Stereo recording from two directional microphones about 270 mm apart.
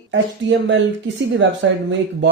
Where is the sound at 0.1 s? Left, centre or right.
Right.